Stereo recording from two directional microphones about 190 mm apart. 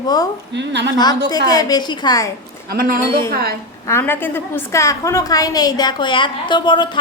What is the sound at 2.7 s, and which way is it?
Speech, 50° right (ahead or behind).